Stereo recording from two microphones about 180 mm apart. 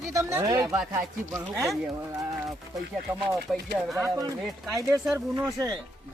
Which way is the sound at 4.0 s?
20° right (ahead or behind).